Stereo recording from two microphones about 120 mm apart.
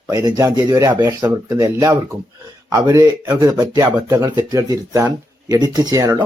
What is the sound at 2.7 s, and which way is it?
Speech, 35° right (ahead or behind).